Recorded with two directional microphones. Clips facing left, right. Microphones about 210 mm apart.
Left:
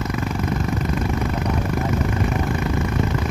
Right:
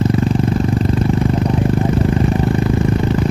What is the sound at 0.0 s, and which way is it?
Vehicle, 30° right (ahead or behind).